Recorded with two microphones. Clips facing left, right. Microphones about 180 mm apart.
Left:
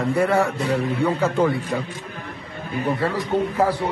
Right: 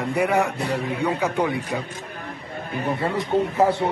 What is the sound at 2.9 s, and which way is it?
Speech, 20° right (ahead or behind).